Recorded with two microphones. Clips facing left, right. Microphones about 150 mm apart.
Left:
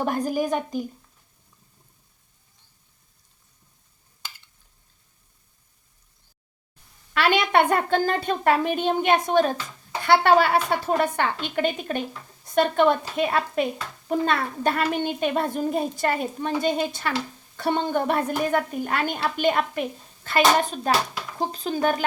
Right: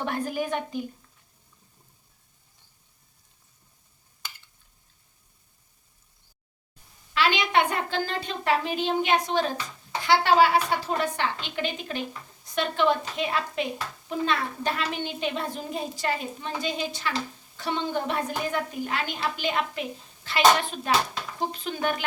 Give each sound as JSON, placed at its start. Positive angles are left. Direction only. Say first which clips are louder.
{"t": 0.0, "sound": "a woman's voice", "louder": "left 5 dB", "side_deg": 40}
{"t": 7.1, "sound": "a woman's voice", "louder": "left 3 dB", "side_deg": 55}